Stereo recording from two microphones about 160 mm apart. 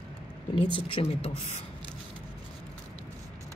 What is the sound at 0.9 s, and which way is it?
Speech, 35° left (ahead or behind).